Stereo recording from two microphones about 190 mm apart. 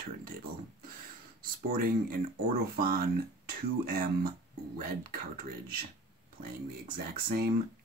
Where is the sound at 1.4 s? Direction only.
50° right (ahead or behind).